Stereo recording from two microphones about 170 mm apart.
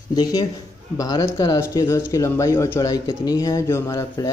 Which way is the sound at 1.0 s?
20° left (ahead or behind).